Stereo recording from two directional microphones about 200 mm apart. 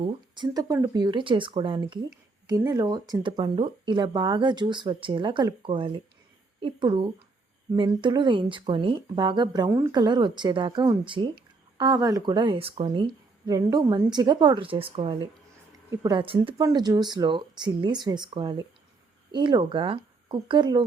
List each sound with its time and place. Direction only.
0.1 s a woman's voice: 20° right (ahead or behind)